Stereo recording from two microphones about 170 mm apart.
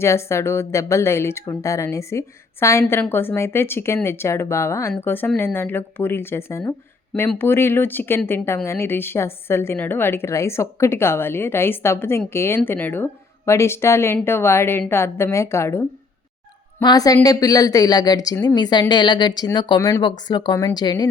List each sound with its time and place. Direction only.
0.0 s speech: 15° left (ahead or behind)